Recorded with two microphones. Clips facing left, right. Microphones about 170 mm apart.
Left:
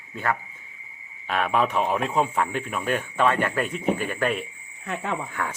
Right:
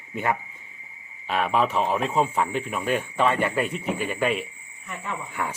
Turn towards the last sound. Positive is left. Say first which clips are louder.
# even
turn(degrees=-10)  # may be behind; listen again after turning